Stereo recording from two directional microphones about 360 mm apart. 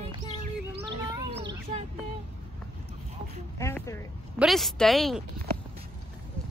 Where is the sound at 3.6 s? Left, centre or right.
Centre.